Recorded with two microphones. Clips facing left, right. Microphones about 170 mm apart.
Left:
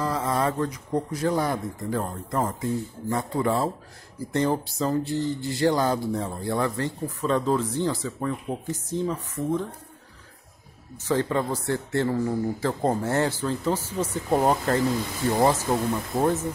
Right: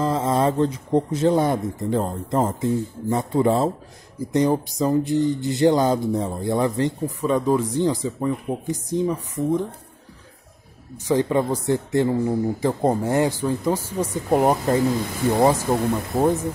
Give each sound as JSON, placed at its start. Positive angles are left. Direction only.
{"t": 0.0, "sound": "speech", "side_deg": -25}
{"t": 11.1, "sound": "speech", "side_deg": -15}